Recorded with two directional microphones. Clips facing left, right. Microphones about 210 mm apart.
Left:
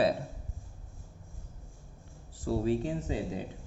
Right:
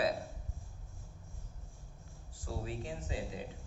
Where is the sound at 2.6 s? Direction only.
40° left (ahead or behind).